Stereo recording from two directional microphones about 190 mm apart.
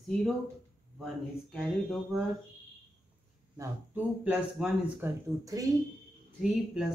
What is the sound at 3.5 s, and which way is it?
Speech, 15° right (ahead or behind).